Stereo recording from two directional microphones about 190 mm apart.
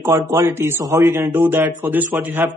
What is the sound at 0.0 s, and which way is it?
A man's voice, 15° right (ahead or behind).